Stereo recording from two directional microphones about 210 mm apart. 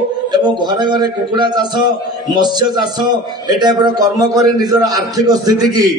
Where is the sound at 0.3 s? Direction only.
20° right (ahead or behind).